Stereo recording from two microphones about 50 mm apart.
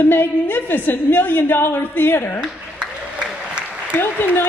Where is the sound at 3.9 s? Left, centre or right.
Left.